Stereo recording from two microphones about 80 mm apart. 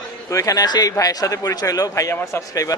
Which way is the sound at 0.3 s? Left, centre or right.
Left.